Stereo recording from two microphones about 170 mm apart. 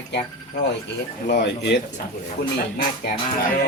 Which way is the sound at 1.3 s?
80° left.